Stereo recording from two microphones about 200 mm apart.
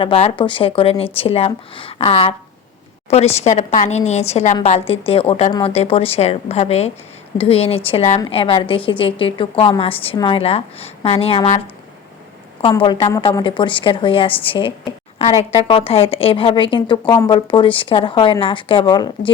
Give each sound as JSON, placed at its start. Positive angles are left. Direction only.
{"t": 0.0, "sound": "a woman's voice", "side_deg": 30}
{"t": 12.6, "sound": "a woman's voice", "side_deg": 25}